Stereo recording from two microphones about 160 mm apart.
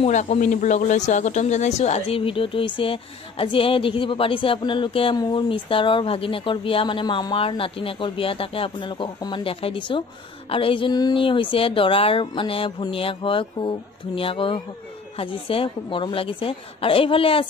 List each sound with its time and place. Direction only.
0.0 s speech: 45° left (ahead or behind)